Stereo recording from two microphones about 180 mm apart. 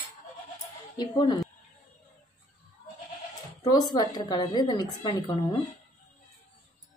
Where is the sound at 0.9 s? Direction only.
25° left (ahead or behind).